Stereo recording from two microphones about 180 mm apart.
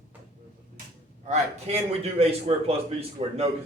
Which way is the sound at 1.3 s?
35° right (ahead or behind).